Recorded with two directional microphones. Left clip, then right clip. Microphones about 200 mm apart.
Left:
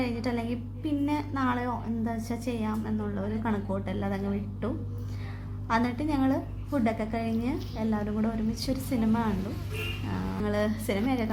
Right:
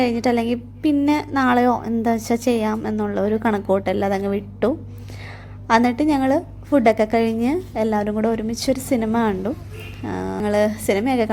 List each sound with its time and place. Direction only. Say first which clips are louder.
0.0 s a woman's voice: right 12 dB; 40° right (ahead or behind)